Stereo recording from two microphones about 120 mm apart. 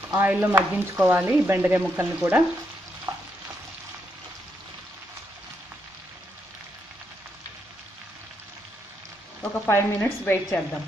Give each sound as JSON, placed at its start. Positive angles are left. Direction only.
{"t": 0.1, "sound": "speech", "side_deg": -15}
{"t": 9.4, "sound": "speech", "side_deg": 20}